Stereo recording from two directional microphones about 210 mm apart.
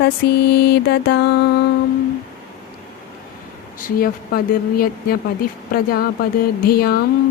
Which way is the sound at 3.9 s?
45° left (ahead or behind).